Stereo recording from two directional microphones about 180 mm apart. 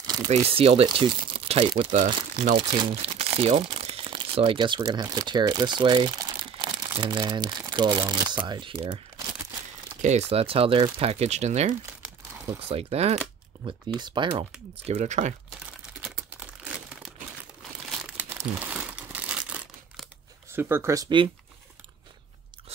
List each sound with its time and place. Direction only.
0.0 s crumpling: 20° right (ahead or behind)
0.3 s speech: 30° right (ahead or behind)
10.0 s speech: 35° right (ahead or behind)
13.9 s speech: 25° right (ahead or behind)
14.9 s speech: 40° right (ahead or behind)
18.1 s crumpling: 10° right (ahead or behind)
20.5 s speech: 15° right (ahead or behind)